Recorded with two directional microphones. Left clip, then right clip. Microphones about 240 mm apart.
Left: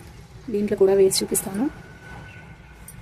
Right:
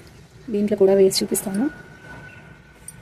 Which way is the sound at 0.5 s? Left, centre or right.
Centre.